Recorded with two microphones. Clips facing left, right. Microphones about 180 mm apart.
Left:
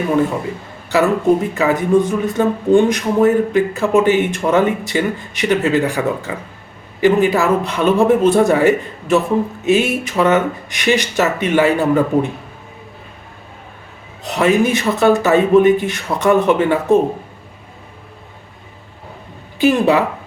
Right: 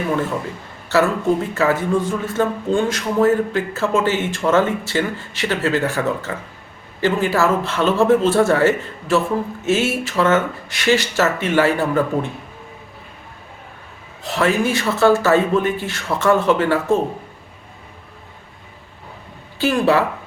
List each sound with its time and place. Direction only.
0.9 s speech: 15° left (ahead or behind)
14.3 s speech: 20° left (ahead or behind)
19.5 s speech: 20° left (ahead or behind)